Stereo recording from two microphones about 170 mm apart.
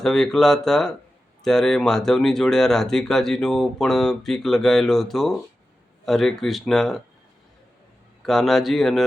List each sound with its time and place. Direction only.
0.0 s speech: centre (ahead or behind)
8.2 s speech: centre (ahead or behind)